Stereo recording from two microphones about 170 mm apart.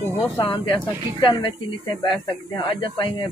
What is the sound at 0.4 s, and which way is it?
Speech, 30° left (ahead or behind).